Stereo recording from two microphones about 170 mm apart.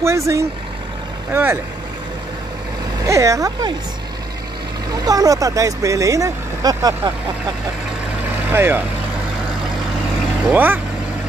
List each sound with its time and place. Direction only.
0.0 s speech: 15° right (ahead or behind)
3.0 s speech: 20° right (ahead or behind)
5.0 s speech: 20° right (ahead or behind)
8.5 s speech: 10° right (ahead or behind)
10.5 s speech: 10° right (ahead or behind)